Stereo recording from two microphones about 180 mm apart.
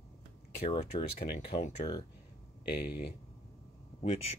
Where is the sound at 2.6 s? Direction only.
60° left (ahead or behind).